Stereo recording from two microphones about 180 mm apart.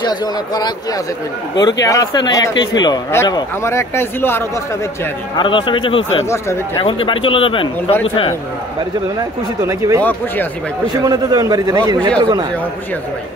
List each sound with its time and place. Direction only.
0.0 s speech: 25° left (ahead or behind)
5.4 s speech: 25° left (ahead or behind)
6.2 s speech: 15° left (ahead or behind)
6.8 s speech: 30° left (ahead or behind)
9.7 s speech: 15° right (ahead or behind)
10.0 s speech: 10° left (ahead or behind)
11.0 s a man's voice: 20° right (ahead or behind)